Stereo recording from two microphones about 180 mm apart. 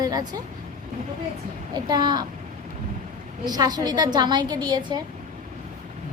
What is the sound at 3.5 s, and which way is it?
A woman's voice, 20° right (ahead or behind).